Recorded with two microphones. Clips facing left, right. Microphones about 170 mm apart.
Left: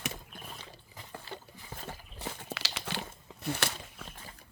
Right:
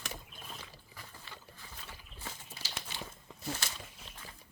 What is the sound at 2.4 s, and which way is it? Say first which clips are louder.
Crumpling: left 7 dB; 75° left (ahead or behind).